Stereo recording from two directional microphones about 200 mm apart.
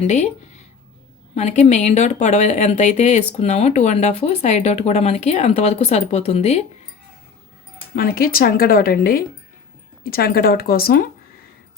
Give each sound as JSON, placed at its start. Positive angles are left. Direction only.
{"t": 0.0, "sound": "speech", "side_deg": 30}
{"t": 1.4, "sound": "speech", "side_deg": 35}
{"t": 7.9, "sound": "speech", "side_deg": 45}